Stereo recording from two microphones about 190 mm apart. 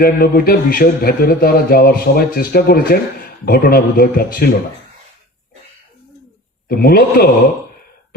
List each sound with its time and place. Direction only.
0.0 s speech: 50° left (ahead or behind)
6.7 s speech: 50° left (ahead or behind)